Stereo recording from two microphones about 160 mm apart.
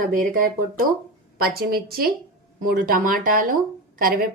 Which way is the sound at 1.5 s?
70° right (ahead or behind).